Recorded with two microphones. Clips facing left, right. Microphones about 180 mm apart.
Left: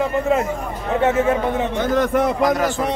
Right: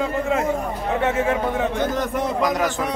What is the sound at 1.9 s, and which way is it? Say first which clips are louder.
Speech: left 6 dB; 70° left (ahead or behind).